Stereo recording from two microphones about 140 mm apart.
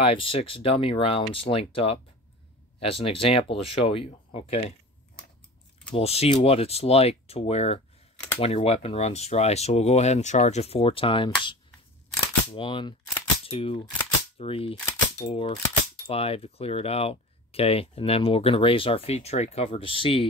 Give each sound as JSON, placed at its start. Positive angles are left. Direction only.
{"t": 0.0, "sound": "speech", "side_deg": 40}
{"t": 5.9, "sound": "speech", "side_deg": 45}
{"t": 12.5, "sound": "speech", "side_deg": 35}